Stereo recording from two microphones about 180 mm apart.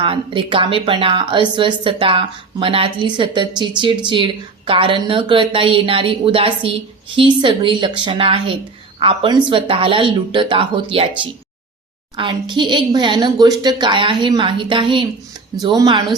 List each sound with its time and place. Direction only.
0.0 s a woman's voice: 30° right (ahead or behind)
12.1 s a woman's voice: 25° right (ahead or behind)